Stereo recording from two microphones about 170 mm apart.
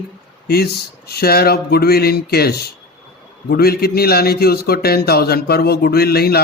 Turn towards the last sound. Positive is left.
turn(degrees=65)  # may be behind; listen again after turning